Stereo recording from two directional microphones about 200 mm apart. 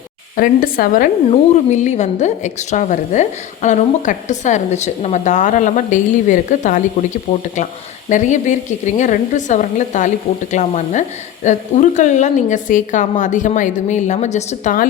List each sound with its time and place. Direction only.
0.3 s a woman's voice: 45° left (ahead or behind)